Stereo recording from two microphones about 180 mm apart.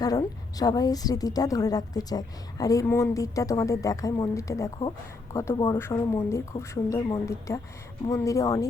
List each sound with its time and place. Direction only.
0.0 s a woman's voice: 20° left (ahead or behind)